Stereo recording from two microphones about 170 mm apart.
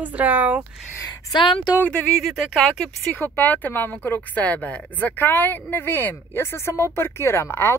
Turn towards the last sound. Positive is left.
turn(degrees=15)  # may be behind; listen again after turning